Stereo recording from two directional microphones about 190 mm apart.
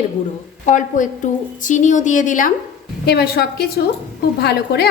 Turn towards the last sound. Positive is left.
turn(degrees=55)  # may be behind; listen again after turning